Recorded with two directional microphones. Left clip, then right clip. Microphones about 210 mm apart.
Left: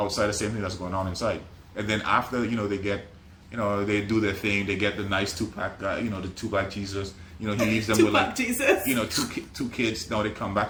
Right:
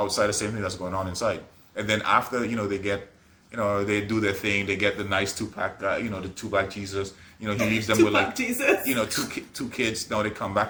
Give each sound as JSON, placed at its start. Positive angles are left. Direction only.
{"t": 0.0, "sound": "speech", "side_deg": -15}
{"t": 8.1, "sound": "speech", "side_deg": 10}
{"t": 9.0, "sound": "speech", "side_deg": -15}